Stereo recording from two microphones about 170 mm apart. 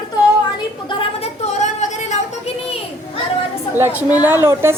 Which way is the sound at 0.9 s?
40° left (ahead or behind).